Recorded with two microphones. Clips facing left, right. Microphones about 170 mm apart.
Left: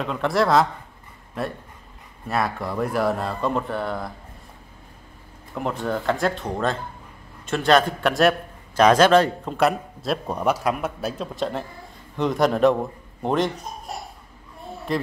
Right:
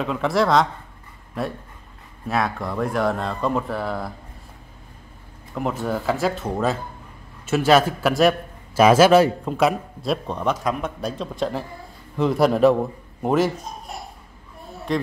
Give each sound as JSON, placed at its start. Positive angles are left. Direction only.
{"t": 0.0, "sound": "speech", "side_deg": 0}
{"t": 5.5, "sound": "a man's voice", "side_deg": 0}
{"t": 14.9, "sound": "speech", "side_deg": 0}